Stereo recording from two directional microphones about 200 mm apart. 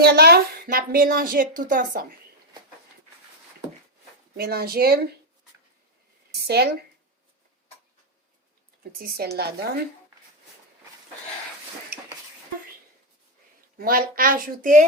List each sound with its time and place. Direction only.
0.0 s a woman's voice: 50° right (ahead or behind)
4.4 s a woman's voice: 50° right (ahead or behind)
6.5 s a woman's voice: 50° right (ahead or behind)
8.8 s a woman's voice: 50° right (ahead or behind)
13.7 s a woman's voice: 45° right (ahead or behind)